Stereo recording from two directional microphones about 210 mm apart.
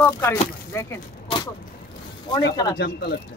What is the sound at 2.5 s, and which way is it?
Speech, 20° left (ahead or behind).